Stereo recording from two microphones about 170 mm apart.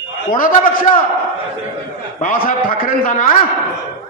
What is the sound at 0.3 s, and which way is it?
Speech, 50° left (ahead or behind).